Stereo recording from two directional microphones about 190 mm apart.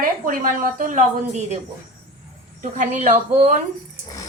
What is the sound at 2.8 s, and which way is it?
Speech, 40° right (ahead or behind).